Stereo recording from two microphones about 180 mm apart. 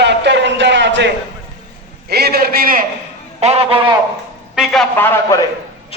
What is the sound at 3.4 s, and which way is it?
Speech, 35° right (ahead or behind).